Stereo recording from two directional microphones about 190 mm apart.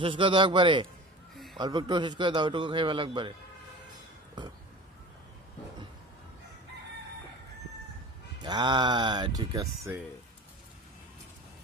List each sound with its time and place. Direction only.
0.0 s a man's voice: 25° right (ahead or behind)
8.4 s a man's voice: 25° right (ahead or behind)